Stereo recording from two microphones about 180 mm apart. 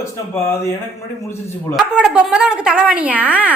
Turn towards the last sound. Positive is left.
turn(degrees=-10)  # may be behind; listen again after turning